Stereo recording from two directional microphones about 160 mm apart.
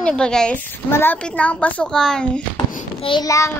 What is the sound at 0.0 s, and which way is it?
A woman's voice, 5° left (ahead or behind).